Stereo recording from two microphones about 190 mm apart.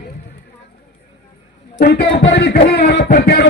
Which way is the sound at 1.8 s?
60° left (ahead or behind).